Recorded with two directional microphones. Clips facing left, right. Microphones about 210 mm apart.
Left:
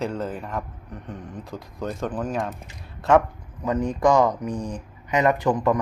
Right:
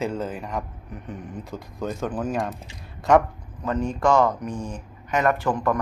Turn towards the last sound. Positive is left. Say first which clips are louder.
# left 2 dB
turn(degrees=20)  # may be behind; listen again after turning